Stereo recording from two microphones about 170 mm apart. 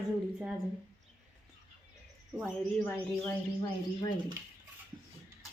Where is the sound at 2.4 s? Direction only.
10° left (ahead or behind).